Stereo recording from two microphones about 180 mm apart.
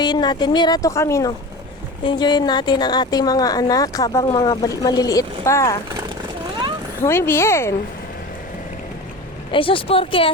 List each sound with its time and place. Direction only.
0.0 s a woman's voice: 25° left (ahead or behind)
7.0 s speech: 15° left (ahead or behind)
9.5 s a woman's voice: 30° left (ahead or behind)